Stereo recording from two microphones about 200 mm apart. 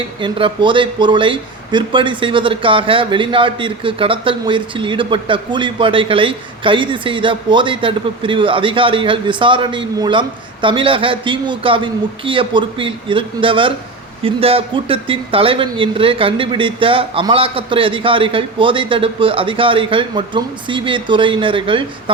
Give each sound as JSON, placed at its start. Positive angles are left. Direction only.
{"t": 0.2, "sound": "speech", "side_deg": -25}